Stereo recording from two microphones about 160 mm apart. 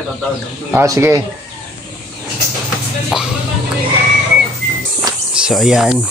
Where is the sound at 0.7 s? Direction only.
15° right (ahead or behind).